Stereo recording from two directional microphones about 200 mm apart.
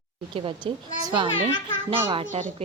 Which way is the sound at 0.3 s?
25° right (ahead or behind).